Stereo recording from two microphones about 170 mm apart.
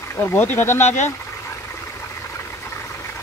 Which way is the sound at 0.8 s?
45° left (ahead or behind).